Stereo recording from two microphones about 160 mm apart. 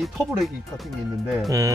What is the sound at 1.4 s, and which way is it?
Speech, 20° right (ahead or behind).